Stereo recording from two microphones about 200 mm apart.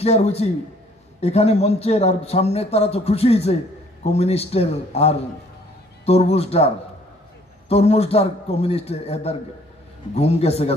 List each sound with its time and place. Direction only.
0.0 s speech: 30° left (ahead or behind)